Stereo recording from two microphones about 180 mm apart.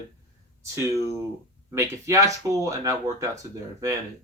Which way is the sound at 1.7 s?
20° right (ahead or behind).